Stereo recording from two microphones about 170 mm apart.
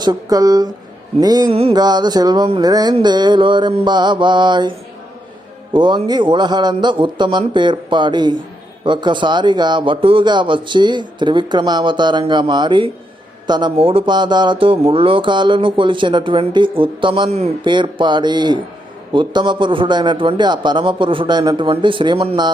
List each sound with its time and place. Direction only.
0.0 s speech: 20° right (ahead or behind)
5.7 s speech: 25° right (ahead or behind)